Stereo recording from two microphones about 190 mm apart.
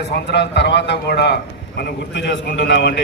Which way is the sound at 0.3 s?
65° left (ahead or behind).